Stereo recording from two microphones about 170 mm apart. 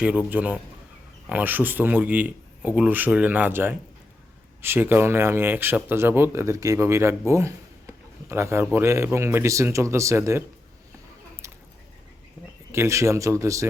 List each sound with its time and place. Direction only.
0.0 s speech: 10° right (ahead or behind)
11.4 s a sound: 15° right (ahead or behind)
12.7 s speech: 15° right (ahead or behind)